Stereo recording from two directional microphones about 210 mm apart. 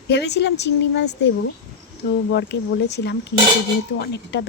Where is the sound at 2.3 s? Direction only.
55° left (ahead or behind).